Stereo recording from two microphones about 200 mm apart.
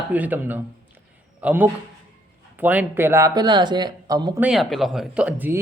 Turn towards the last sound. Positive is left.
turn(degrees=-10)  # may be behind; listen again after turning